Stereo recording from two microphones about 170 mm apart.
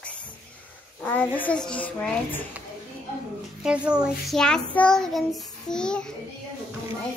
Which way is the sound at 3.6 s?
5° right (ahead or behind).